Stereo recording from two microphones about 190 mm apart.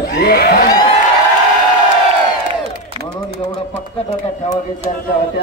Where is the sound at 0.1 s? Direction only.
60° left (ahead or behind).